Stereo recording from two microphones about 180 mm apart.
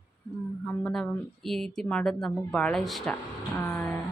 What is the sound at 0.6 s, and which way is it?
Speech, 5° left (ahead or behind).